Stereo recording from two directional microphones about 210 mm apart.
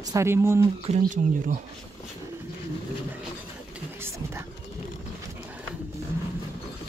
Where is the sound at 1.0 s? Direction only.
40° right (ahead or behind).